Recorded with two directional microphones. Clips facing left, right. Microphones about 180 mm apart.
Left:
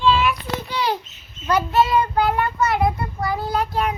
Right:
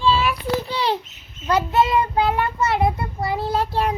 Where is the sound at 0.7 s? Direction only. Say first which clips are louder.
Left 3 dB; 25° right (ahead or behind).